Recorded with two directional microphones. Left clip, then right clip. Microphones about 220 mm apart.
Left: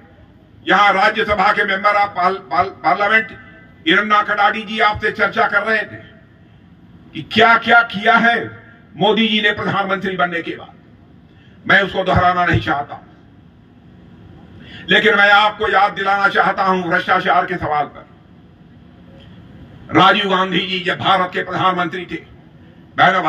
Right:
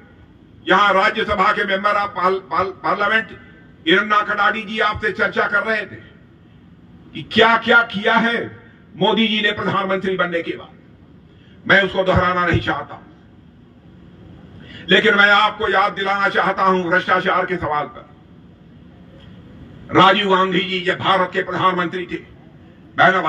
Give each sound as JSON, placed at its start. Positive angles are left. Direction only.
{"t": 0.7, "sound": "a man's voice", "side_deg": 45}
{"t": 7.1, "sound": "a man's voice", "side_deg": 45}
{"t": 7.6, "sound": "music", "side_deg": 40}
{"t": 8.9, "sound": "a man's voice", "side_deg": 45}
{"t": 11.6, "sound": "a man's voice", "side_deg": 45}
{"t": 14.9, "sound": "a man's voice", "side_deg": 45}
{"t": 19.9, "sound": "a man's voice", "side_deg": 45}